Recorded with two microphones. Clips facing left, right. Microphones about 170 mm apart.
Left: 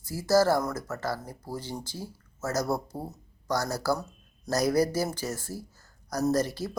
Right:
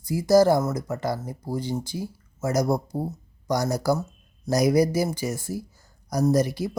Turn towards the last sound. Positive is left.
turn(degrees=-10)  # may be behind; listen again after turning